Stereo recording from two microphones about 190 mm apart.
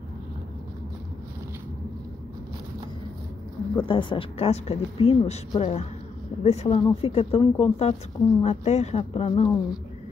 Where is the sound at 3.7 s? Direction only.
25° left (ahead or behind).